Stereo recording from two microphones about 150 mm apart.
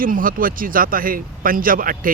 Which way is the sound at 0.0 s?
65° right (ahead or behind).